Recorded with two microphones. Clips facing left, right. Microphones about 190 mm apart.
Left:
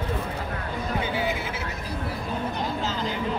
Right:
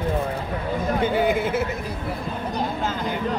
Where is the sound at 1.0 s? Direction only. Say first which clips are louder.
Right 7 dB; 55° right (ahead or behind).